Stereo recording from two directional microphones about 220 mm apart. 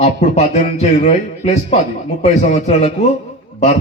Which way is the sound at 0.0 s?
30° left (ahead or behind).